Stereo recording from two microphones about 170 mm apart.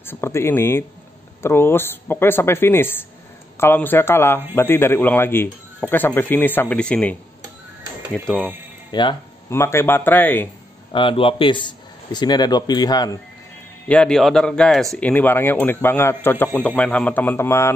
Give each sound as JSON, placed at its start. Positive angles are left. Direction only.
{"t": 0.0, "sound": "speech", "side_deg": 15}
{"t": 8.3, "sound": "speech", "side_deg": 0}
{"t": 8.9, "sound": "a man's voice", "side_deg": 25}
{"t": 10.9, "sound": "a man's voice", "side_deg": 30}
{"t": 13.8, "sound": "speech", "side_deg": 5}